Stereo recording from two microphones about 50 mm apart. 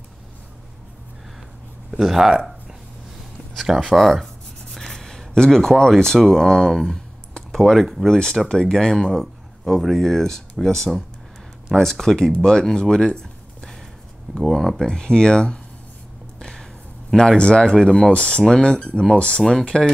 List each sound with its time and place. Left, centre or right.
1.9 s speech: centre
3.5 s writing: centre
6.3 s speech: centre
6.8 s a sound: centre
8.1 s speech: centre
14.9 s speech: centre
16.3 s a sound: centre
17.2 s speech: centre